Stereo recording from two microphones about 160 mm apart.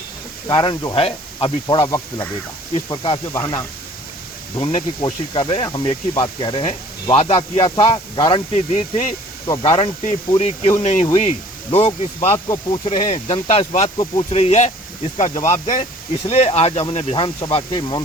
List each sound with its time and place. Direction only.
0.4 s speech: 30° left (ahead or behind)
4.5 s speech: 35° left (ahead or behind)
8.5 s speech: 45° left (ahead or behind)
9.6 s speech: 35° left (ahead or behind)